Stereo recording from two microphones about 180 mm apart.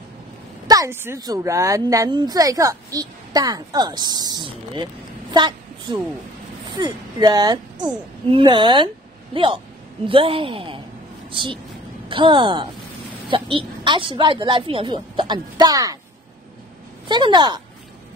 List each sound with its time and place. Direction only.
0.7 s a woman's voice: 15° right (ahead or behind)
17.1 s a woman's voice: 25° right (ahead or behind)